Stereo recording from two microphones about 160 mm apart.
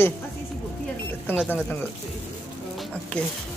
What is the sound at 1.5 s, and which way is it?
Speech, 10° left (ahead or behind).